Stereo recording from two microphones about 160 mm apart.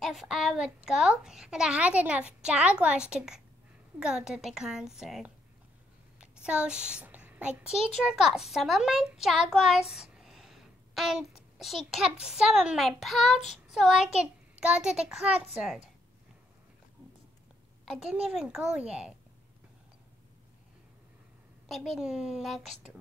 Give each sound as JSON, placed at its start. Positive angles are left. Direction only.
{"t": 0.0, "sound": "a child's voice", "side_deg": 0}
{"t": 17.8, "sound": "a child's voice", "side_deg": -5}
{"t": 21.6, "sound": "a child's voice", "side_deg": 0}